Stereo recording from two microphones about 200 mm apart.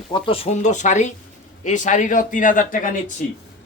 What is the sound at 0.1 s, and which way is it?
A man's voice, 30° left (ahead or behind).